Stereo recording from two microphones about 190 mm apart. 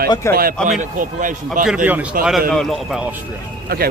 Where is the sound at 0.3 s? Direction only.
50° right (ahead or behind).